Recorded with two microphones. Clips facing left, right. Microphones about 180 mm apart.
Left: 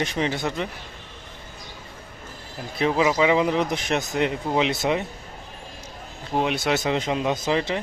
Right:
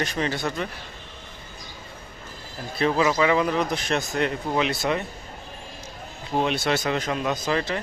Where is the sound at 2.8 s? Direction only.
15° left (ahead or behind).